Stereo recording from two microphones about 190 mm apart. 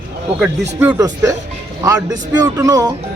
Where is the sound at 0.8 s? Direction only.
15° right (ahead or behind).